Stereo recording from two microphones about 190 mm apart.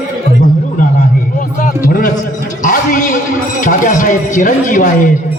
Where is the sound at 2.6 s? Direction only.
45° left (ahead or behind).